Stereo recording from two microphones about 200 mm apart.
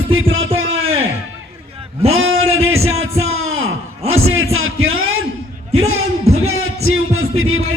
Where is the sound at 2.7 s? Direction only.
90° right.